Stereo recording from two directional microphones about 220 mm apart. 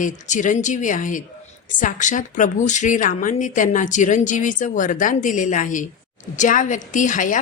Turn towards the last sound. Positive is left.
turn(degrees=35)  # may be behind; listen again after turning